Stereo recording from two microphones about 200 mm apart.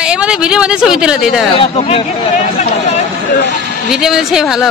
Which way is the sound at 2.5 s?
35° left (ahead or behind).